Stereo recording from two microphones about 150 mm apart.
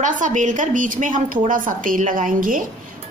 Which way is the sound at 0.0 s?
55° right (ahead or behind).